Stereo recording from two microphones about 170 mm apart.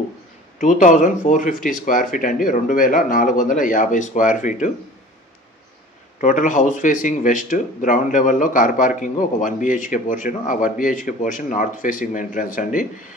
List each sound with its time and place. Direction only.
0.6 s speech: 50° left (ahead or behind)
6.2 s speech: 50° left (ahead or behind)